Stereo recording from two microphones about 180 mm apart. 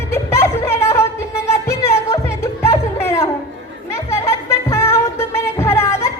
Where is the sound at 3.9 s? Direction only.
15° left (ahead or behind).